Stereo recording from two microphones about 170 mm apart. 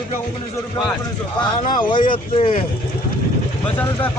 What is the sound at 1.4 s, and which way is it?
Speech, 25° left (ahead or behind).